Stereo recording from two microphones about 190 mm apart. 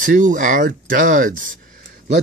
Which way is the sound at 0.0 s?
45° right (ahead or behind).